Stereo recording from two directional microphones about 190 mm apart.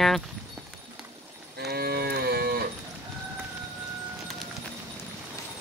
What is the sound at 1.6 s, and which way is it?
Cattle, 55° right (ahead or behind).